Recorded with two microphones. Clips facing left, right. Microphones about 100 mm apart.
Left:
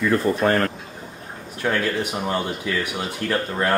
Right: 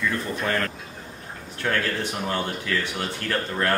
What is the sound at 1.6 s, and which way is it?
Speech, 10° left (ahead or behind).